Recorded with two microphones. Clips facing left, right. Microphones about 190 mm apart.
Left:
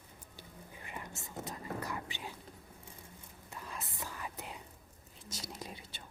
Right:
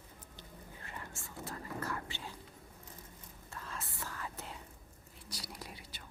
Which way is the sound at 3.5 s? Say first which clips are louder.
Left 1 dB; 15° left (ahead or behind).